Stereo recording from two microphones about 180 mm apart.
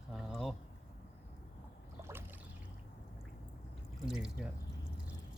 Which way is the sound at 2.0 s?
10° right (ahead or behind).